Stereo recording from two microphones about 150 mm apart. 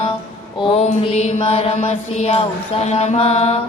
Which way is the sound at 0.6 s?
40° left (ahead or behind).